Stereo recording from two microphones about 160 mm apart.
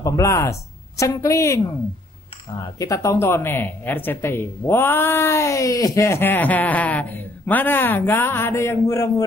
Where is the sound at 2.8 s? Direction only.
20° left (ahead or behind).